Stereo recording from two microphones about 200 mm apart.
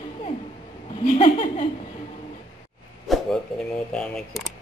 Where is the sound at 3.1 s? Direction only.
Centre (ahead or behind).